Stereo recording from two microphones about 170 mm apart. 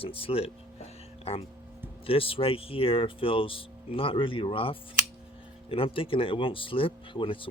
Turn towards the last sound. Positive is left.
turn(degrees=30)  # may be behind; listen again after turning